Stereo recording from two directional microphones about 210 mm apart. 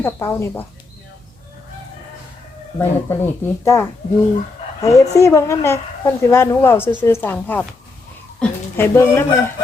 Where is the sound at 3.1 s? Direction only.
10° left (ahead or behind).